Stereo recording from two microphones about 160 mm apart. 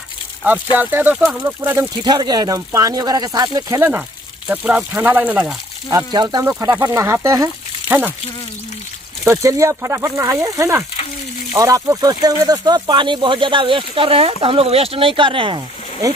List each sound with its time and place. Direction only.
0.7 s speech: 10° right (ahead or behind)
2.0 s speech: 25° right (ahead or behind)
4.5 s speech: 5° right (ahead or behind)
5.9 s speech: 25° right (ahead or behind)
9.2 s speech: 20° right (ahead or behind)